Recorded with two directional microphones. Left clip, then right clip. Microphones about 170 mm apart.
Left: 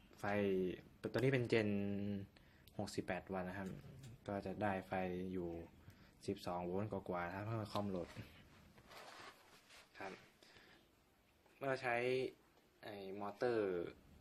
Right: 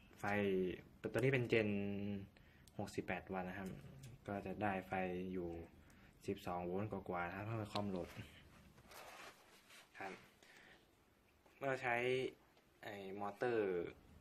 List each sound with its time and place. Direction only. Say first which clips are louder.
0.2 s speech: even; 15° left (ahead or behind)
11.6 s speech: even; 10° left (ahead or behind)